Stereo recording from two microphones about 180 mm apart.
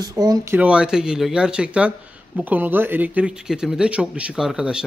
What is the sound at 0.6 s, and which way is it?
Speech, 5° right (ahead or behind).